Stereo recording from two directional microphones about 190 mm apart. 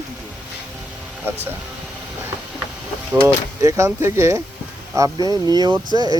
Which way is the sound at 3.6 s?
15° right (ahead or behind).